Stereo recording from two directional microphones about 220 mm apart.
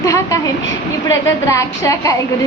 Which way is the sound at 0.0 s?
15° left (ahead or behind).